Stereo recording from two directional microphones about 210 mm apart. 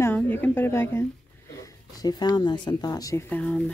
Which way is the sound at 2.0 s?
20° left (ahead or behind).